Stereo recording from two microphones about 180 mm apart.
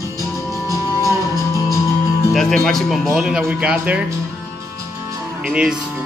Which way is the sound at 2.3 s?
Centre (ahead or behind).